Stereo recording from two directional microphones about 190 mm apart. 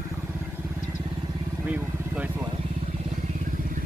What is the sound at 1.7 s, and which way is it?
Vehicle, 10° right (ahead or behind).